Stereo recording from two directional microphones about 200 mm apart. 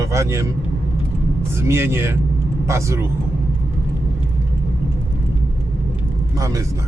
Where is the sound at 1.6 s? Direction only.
10° right (ahead or behind).